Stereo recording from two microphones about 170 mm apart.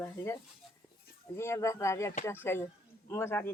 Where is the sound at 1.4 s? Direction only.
15° left (ahead or behind).